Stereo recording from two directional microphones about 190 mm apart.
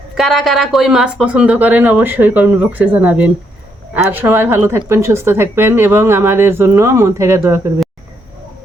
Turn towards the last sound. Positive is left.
turn(degrees=-15)  # may be behind; listen again after turning